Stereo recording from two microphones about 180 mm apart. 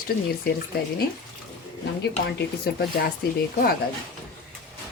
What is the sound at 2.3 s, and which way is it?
Speech, 60° left (ahead or behind).